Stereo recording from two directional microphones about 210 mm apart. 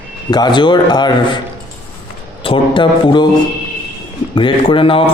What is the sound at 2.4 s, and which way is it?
Speech, 25° left (ahead or behind).